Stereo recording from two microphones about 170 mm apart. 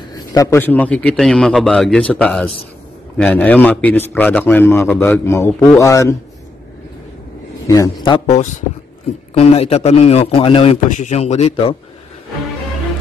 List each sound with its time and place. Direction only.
0.1 s a man's voice: 20° left (ahead or behind)
7.6 s a man's voice: 20° left (ahead or behind)
8.3 s a man's voice: 45° left (ahead or behind)